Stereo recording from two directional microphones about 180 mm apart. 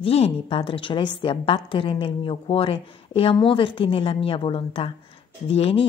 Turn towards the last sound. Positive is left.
turn(degrees=35)  # may be behind; listen again after turning